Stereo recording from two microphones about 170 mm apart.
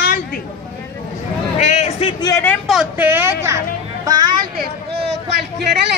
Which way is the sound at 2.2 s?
15° left (ahead or behind).